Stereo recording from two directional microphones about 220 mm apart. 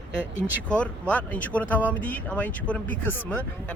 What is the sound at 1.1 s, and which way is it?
Speech, 5° left (ahead or behind).